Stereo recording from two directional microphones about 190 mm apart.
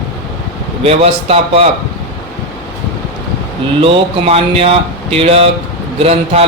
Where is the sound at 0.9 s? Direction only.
30° right (ahead or behind).